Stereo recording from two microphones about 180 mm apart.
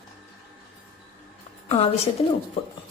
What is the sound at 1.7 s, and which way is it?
Speech, 35° left (ahead or behind).